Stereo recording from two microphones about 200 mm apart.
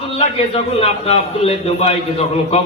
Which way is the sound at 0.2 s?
30° left (ahead or behind).